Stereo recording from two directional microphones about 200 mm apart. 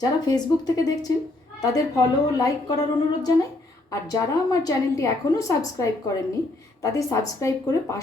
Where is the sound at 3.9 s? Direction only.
15° left (ahead or behind).